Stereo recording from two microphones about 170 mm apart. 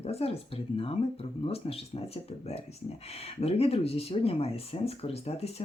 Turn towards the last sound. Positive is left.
turn(degrees=40)  # may be behind; listen again after turning